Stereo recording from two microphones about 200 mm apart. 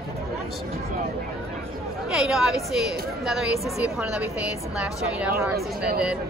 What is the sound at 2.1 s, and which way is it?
Speech, centre (ahead or behind).